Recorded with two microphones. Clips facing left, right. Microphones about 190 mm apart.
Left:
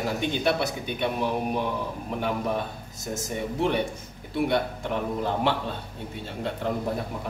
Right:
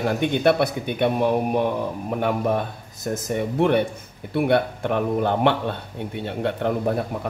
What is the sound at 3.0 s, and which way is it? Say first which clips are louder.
Speech: right 6 dB; 60° right (ahead or behind).